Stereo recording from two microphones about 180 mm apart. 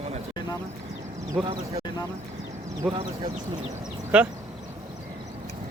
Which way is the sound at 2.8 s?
5° right (ahead or behind).